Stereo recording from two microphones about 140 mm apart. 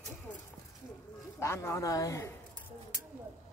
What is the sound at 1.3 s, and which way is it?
Speech, 20° left (ahead or behind).